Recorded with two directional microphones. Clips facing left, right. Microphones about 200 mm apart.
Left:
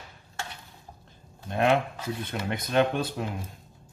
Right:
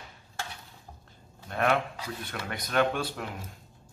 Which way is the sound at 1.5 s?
20° left (ahead or behind).